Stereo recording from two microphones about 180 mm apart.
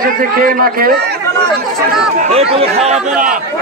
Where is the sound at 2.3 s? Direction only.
35° right (ahead or behind).